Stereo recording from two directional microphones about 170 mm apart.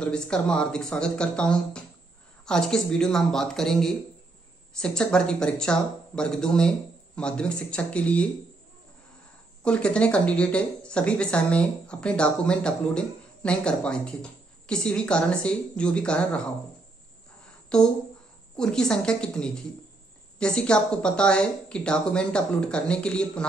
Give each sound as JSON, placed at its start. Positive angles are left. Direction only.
{"t": 0.0, "sound": "speech", "side_deg": 5}
{"t": 9.6, "sound": "speech", "side_deg": 5}
{"t": 17.7, "sound": "speech", "side_deg": 5}